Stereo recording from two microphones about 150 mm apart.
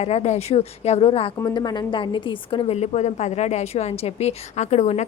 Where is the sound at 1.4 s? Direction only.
25° left (ahead or behind).